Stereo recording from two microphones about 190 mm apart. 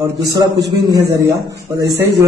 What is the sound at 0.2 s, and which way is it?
Speech, 60° right (ahead or behind).